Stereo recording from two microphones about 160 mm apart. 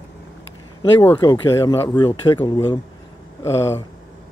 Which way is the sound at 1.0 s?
15° left (ahead or behind).